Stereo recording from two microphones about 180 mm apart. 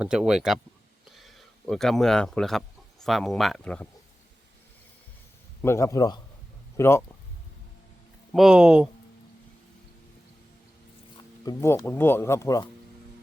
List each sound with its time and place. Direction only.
0.0 s speech: 5° right (ahead or behind)
5.6 s speech: 15° left (ahead or behind)
8.3 s speech: centre (ahead or behind)
11.2 s speech: 20° left (ahead or behind)